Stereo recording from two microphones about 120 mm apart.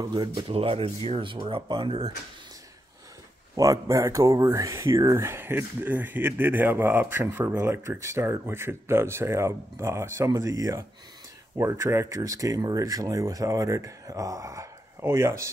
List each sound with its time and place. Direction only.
0.0 s speech: 35° right (ahead or behind)
0.3 s speech: 50° right (ahead or behind)
3.5 s speech: 25° right (ahead or behind)